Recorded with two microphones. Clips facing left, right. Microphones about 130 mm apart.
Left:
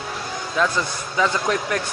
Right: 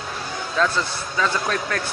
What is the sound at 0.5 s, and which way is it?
A man's voice, 15° left (ahead or behind).